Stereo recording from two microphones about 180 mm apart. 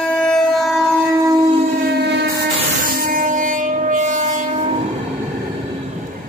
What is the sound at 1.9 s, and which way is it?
Train, 70° right (ahead or behind).